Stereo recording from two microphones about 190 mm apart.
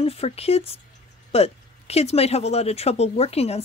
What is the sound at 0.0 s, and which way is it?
Speech, 30° left (ahead or behind).